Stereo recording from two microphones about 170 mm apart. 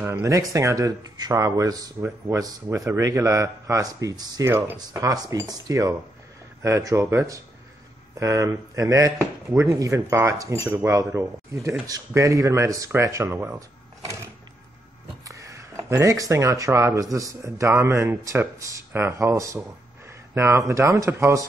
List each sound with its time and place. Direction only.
0.0 s speech: 15° right (ahead or behind)